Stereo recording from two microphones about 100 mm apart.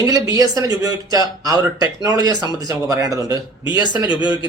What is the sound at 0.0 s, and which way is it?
A man's voice, 40° right (ahead or behind).